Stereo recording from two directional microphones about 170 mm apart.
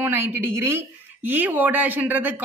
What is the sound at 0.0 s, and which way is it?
Speech, 15° right (ahead or behind).